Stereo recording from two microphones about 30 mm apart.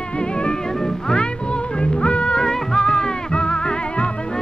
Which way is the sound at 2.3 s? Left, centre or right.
Left.